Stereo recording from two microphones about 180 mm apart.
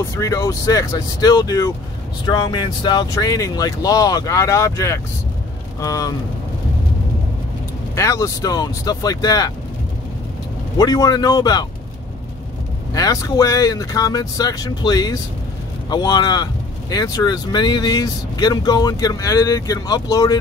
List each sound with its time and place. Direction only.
0.2 s speech: 20° left (ahead or behind)
7.9 s speech: 15° left (ahead or behind)
10.8 s speech: 20° left (ahead or behind)
12.9 s speech: 20° left (ahead or behind)